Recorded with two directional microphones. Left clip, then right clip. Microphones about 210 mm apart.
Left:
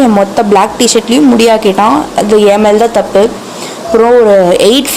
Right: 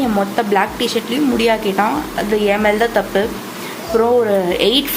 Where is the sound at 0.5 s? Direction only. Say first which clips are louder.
Left 10 dB; 45° left (ahead or behind).